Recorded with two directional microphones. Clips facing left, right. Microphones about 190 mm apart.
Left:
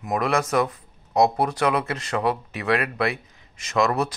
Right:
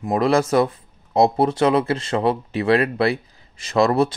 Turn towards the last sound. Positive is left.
turn(degrees=-30)  # may be behind; listen again after turning